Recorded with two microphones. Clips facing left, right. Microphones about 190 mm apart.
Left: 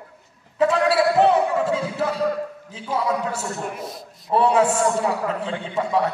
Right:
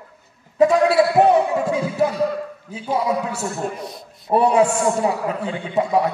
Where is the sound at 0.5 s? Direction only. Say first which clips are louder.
Right 4 dB; 10° right (ahead or behind).